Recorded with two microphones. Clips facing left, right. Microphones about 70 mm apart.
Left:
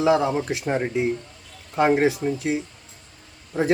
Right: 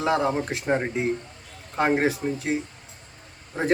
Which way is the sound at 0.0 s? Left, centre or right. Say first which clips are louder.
Left 3 dB; right.